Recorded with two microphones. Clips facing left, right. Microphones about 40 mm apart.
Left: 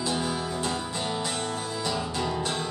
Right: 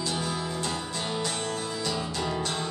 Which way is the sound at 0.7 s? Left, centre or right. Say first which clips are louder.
Left 2 dB; centre.